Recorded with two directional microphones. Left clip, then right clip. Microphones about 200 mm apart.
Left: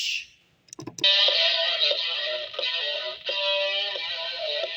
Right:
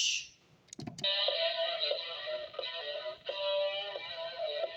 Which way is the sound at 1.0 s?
30° left (ahead or behind).